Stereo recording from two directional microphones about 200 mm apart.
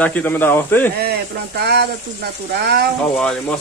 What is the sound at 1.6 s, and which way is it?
Speech, 55° right (ahead or behind).